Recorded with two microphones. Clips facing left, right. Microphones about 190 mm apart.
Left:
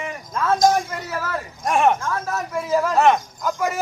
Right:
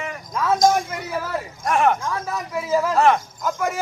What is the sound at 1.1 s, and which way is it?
Speech, 15° right (ahead or behind).